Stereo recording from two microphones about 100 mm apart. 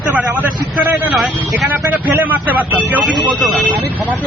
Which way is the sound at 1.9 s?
15° right (ahead or behind).